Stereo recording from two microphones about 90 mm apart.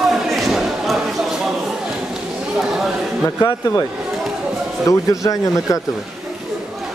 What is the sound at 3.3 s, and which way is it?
Speech, 40° left (ahead or behind).